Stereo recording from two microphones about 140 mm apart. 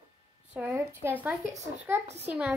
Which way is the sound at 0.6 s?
10° right (ahead or behind).